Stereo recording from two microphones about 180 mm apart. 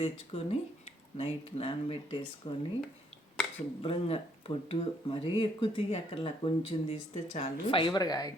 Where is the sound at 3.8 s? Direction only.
30° left (ahead or behind).